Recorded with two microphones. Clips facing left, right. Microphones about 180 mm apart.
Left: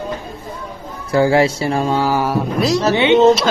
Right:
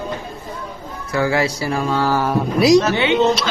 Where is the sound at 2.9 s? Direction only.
20° left (ahead or behind).